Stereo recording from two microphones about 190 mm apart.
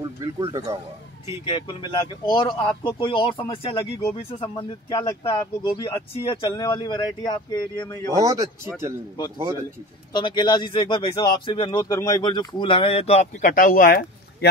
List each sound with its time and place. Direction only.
0.0 s speech: 20° right (ahead or behind)
1.4 s speech: 25° left (ahead or behind)
8.1 s speech: 15° right (ahead or behind)
10.1 s speech: 25° left (ahead or behind)
13.5 s speech: 45° left (ahead or behind)